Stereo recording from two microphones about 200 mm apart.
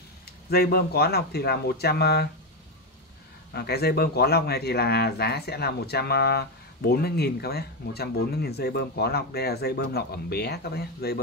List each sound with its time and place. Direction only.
0.5 s speech: 50° left (ahead or behind)
3.5 s speech: 55° left (ahead or behind)